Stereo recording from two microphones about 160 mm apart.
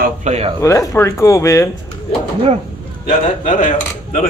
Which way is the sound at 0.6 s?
20° left (ahead or behind).